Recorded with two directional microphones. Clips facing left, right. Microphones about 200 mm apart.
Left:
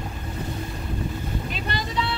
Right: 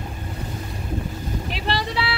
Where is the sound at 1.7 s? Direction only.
90° right.